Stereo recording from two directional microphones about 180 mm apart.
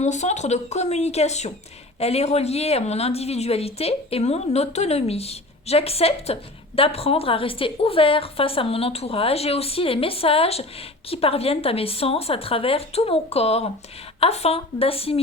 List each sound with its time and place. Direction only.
0.0 s a woman's voice: 40° left (ahead or behind)